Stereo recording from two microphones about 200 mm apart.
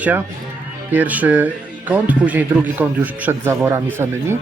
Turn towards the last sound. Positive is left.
turn(degrees=-10)  # may be behind; listen again after turning